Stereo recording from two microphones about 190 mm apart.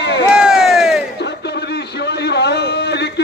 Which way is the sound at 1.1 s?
65° left (ahead or behind).